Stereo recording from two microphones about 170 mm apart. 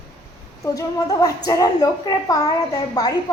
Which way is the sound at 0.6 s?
20° left (ahead or behind).